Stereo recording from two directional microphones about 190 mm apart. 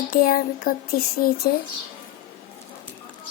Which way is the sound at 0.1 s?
50° left (ahead or behind).